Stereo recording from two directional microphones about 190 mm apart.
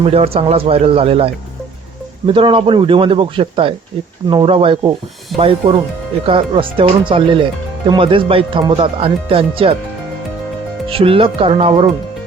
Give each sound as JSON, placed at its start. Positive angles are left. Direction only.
{"t": 0.0, "sound": "speech", "side_deg": -30}
{"t": 10.8, "sound": "speech", "side_deg": -30}